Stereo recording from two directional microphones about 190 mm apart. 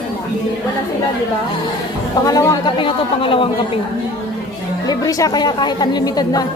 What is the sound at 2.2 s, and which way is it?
A woman's voice, 20° left (ahead or behind).